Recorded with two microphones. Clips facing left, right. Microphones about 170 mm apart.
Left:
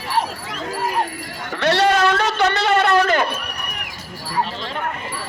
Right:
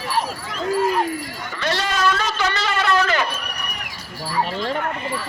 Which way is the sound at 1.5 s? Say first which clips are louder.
Left 7 dB; 65° left (ahead or behind).